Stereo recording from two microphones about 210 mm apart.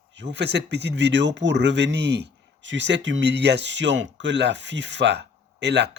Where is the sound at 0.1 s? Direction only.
55° right (ahead or behind).